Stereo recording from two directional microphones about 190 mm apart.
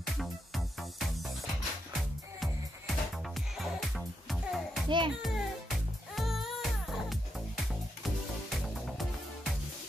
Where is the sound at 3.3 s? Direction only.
Centre (ahead or behind).